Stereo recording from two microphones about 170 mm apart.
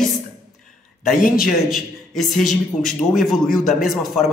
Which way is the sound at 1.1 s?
55° left (ahead or behind).